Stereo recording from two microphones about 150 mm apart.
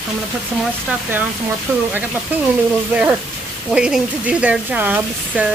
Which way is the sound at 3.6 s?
5° right (ahead or behind).